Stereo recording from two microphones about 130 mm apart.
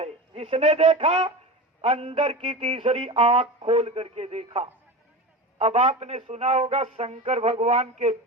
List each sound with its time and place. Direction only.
0.0 s a man's voice: 50° right (ahead or behind)